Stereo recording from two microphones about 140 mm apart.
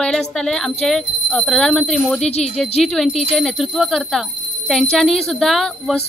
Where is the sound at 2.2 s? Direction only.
50° left (ahead or behind).